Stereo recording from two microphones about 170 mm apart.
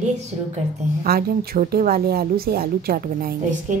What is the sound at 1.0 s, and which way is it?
A woman's voice, 60° right (ahead or behind).